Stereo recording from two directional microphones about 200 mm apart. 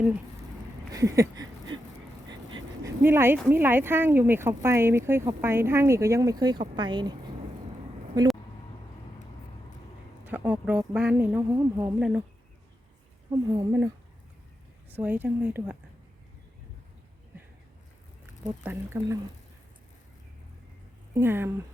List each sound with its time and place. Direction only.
0.9 s a sound: 15° right (ahead or behind)
2.2 s vehicle: 20° right (ahead or behind)
2.8 s speech: 10° right (ahead or behind)
8.1 s speech: 20° right (ahead or behind)
10.2 s speech: 10° right (ahead or behind)
13.3 s speech: 20° right (ahead or behind)
18.6 s speech: 10° right (ahead or behind)
21.2 s speech: 10° right (ahead or behind)